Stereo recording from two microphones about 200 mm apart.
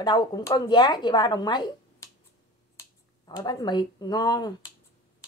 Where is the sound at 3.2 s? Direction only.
20° left (ahead or behind).